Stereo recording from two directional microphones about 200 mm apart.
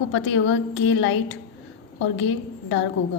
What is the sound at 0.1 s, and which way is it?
A woman's voice, 70° left (ahead or behind).